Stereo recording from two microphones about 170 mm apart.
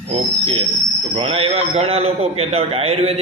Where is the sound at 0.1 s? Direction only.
35° right (ahead or behind).